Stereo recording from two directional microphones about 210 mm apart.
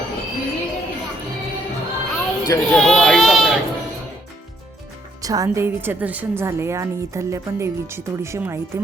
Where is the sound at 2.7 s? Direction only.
Centre (ahead or behind).